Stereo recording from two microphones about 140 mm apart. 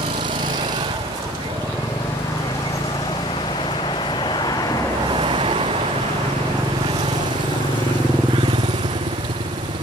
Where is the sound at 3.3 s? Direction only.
35° left (ahead or behind).